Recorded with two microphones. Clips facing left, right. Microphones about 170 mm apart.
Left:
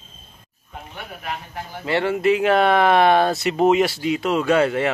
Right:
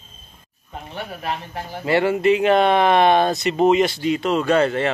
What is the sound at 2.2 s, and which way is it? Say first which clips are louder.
Speech: left 1 dB; 5° left (ahead or behind).